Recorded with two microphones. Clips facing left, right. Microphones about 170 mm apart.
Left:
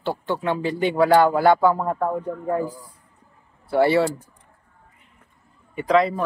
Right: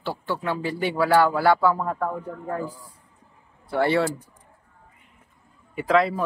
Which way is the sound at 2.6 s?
10° left (ahead or behind).